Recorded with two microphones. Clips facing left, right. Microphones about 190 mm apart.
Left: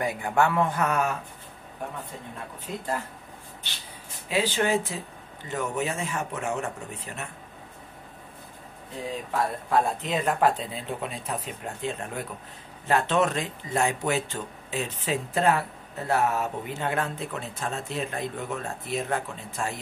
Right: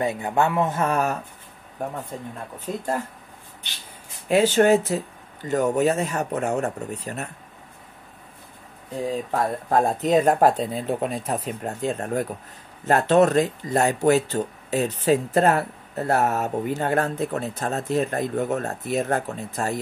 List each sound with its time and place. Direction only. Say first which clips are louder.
0.0 s speech: right 2 dB; 25° right (ahead or behind)
2.6 s speech: right 5 dB; 45° right (ahead or behind)
4.3 s speech: right 8 dB; 45° right (ahead or behind)
9.3 s speech: right 1 dB; 45° right (ahead or behind)